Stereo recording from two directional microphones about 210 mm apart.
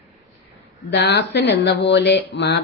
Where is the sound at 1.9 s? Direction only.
55° left (ahead or behind).